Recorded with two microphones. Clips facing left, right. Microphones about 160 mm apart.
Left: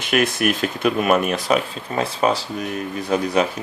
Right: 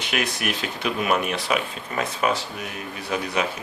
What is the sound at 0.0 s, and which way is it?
Speech, 50° left (ahead or behind).